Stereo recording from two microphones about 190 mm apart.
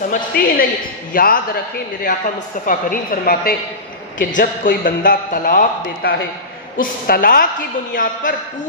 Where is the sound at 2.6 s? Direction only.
45° left (ahead or behind).